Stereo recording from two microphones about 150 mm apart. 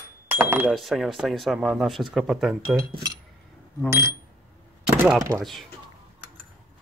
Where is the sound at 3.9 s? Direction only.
20° right (ahead or behind).